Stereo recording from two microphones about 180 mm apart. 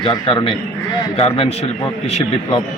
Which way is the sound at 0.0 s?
30° left (ahead or behind).